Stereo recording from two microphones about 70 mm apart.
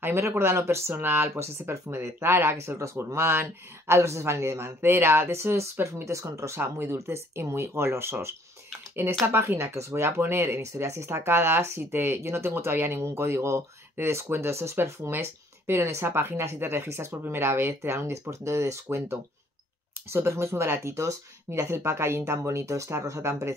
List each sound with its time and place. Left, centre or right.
0.0 s speech: right
9.6 s speech: right